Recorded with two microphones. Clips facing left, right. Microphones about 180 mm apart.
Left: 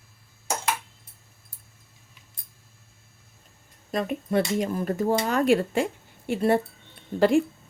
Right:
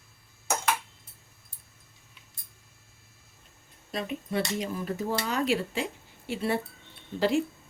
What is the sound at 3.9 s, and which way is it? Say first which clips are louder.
Speech: left 6 dB; 50° left (ahead or behind).